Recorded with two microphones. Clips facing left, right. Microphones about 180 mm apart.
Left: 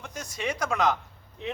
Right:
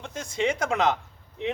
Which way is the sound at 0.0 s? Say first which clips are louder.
Right 6 dB; 25° right (ahead or behind).